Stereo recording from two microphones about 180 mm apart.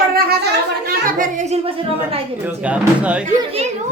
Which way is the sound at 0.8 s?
45° right (ahead or behind).